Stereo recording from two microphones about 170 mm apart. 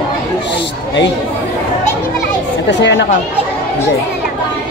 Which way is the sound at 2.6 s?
90° left.